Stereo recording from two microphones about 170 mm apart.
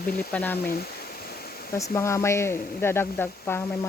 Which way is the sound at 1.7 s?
15° left (ahead or behind).